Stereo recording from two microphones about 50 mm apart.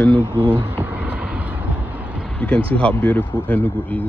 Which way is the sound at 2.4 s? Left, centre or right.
Left.